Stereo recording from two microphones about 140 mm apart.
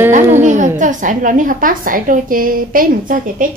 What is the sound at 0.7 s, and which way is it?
A woman's voice, 65° right (ahead or behind).